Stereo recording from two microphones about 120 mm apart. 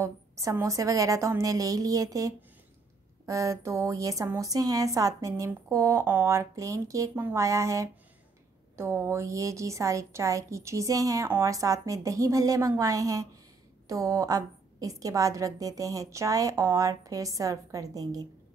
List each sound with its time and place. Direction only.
0.0 s a woman's voice: 25° right (ahead or behind)